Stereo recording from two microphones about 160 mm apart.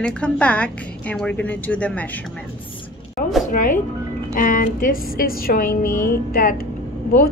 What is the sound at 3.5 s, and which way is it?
A woman's voice, 60° left (ahead or behind).